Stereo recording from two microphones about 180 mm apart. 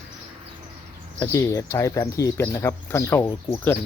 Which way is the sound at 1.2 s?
15° left (ahead or behind).